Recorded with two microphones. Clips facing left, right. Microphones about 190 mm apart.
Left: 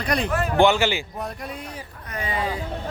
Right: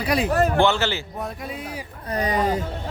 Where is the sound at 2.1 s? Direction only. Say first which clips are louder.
Right 5 dB; 40° right (ahead or behind).